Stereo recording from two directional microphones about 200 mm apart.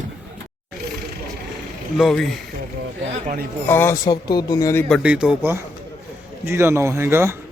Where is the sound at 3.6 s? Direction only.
10° left (ahead or behind).